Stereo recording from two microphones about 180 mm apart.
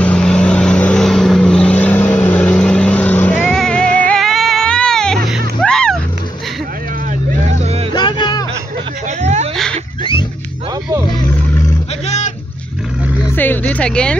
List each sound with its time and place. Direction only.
0.0 s vehicle: 5° left (ahead or behind)
7.9 s music: 25° left (ahead or behind)
9.2 s a sound: 40° right (ahead or behind)
13.4 s music: 10° left (ahead or behind)